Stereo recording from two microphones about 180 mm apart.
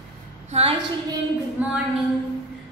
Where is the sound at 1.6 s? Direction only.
10° right (ahead or behind).